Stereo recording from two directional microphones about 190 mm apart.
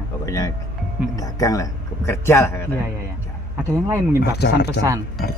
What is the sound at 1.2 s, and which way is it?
Speech, 20° left (ahead or behind).